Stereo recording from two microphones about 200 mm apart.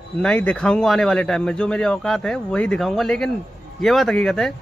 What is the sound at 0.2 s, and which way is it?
Speech, 5° left (ahead or behind).